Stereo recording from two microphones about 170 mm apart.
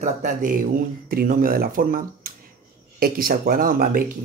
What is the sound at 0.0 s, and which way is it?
Speech, 45° right (ahead or behind).